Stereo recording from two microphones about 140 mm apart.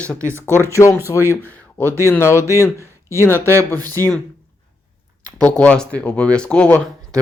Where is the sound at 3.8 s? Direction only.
25° right (ahead or behind).